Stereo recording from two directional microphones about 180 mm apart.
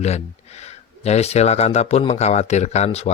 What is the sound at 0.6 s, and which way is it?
Speech, 35° left (ahead or behind).